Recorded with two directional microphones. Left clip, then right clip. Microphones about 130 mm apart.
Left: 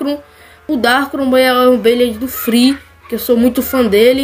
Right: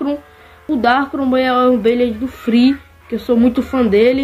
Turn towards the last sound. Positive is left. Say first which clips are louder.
# left 3 dB
turn(degrees=20)  # may be behind; listen again after turning